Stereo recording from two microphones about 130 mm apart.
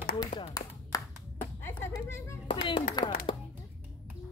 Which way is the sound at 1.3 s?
15° left (ahead or behind).